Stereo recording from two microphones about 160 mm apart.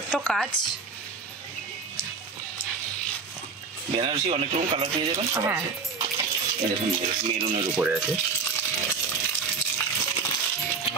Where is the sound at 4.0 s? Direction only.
35° right (ahead or behind).